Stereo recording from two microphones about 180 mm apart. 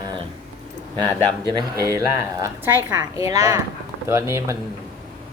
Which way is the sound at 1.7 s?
15° right (ahead or behind).